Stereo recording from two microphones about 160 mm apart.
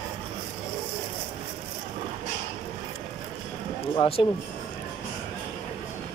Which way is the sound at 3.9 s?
35° left (ahead or behind).